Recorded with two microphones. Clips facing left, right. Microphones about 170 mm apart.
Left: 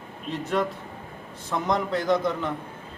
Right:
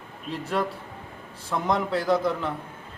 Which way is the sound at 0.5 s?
5° right (ahead or behind).